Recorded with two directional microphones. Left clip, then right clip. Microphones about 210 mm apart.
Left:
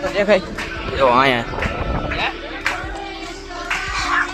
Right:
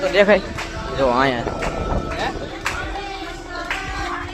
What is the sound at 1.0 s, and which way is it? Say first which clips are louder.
Speech: left 4 dB; 10° left (ahead or behind).